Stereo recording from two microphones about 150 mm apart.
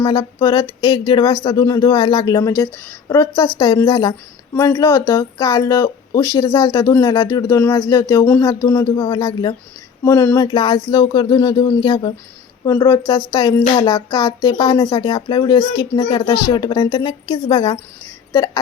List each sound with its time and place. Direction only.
0.0 s a sound: 30° left (ahead or behind)
1.5 s speech: 25° left (ahead or behind)
10.0 s speech: 15° left (ahead or behind)
10.4 s speech: 30° left (ahead or behind)